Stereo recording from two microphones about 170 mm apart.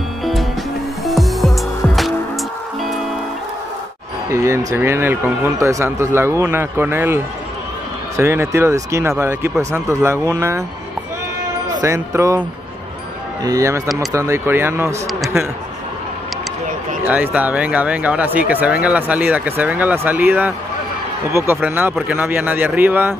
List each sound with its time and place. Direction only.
0.2 s music: centre (ahead or behind)
4.3 s speech: 15° right (ahead or behind)
11.8 s speech: 15° right (ahead or behind)
15.0 s speech: centre (ahead or behind)
17.0 s speech: 10° right (ahead or behind)